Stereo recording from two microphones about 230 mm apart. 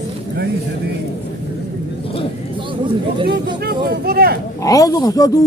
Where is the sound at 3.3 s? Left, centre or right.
Right.